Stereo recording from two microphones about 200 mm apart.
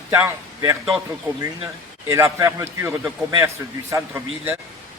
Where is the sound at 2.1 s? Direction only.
15° right (ahead or behind).